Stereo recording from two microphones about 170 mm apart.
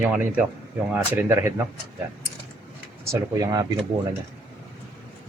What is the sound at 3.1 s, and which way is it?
Speech, 20° right (ahead or behind).